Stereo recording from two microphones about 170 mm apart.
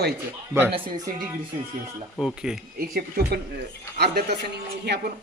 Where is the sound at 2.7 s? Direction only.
60° right (ahead or behind).